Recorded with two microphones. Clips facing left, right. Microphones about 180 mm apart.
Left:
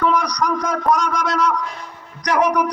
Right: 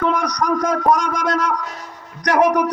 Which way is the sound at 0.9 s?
50° right (ahead or behind).